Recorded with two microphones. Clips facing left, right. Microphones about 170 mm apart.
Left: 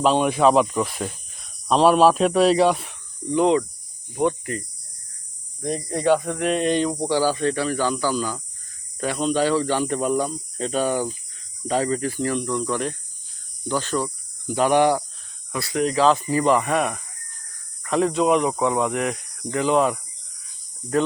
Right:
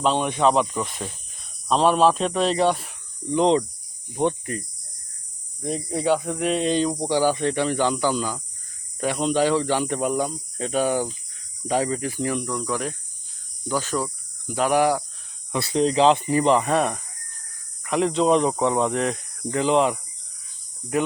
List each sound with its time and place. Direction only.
0.0 s speech: 5° left (ahead or behind)
3.3 s speech: 25° right (ahead or behind)
5.6 s speech: 5° right (ahead or behind)
15.5 s speech: 25° right (ahead or behind)
17.8 s speech: 20° right (ahead or behind)